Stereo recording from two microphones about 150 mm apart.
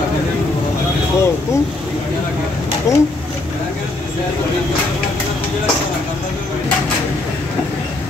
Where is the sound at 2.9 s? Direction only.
20° left (ahead or behind).